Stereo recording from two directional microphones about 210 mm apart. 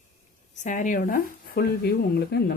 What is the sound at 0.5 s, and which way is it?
Speech, 35° left (ahead or behind).